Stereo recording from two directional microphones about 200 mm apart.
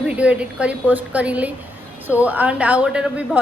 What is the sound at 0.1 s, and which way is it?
A woman's voice, 5° right (ahead or behind).